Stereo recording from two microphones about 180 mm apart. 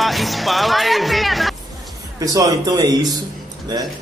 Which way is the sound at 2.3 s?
20° right (ahead or behind).